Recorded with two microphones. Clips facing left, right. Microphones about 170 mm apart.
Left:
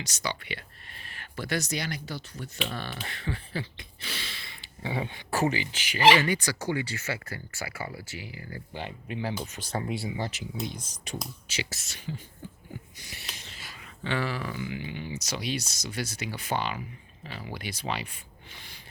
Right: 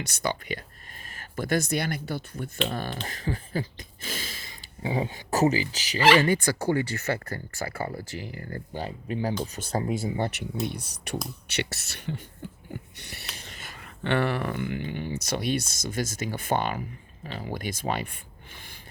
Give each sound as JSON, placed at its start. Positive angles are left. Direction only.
{"t": 0.0, "sound": "speech", "side_deg": -55}
{"t": 6.1, "sound": "speech", "side_deg": -50}
{"t": 7.1, "sound": "speech", "side_deg": -50}
{"t": 13.4, "sound": "speech", "side_deg": -50}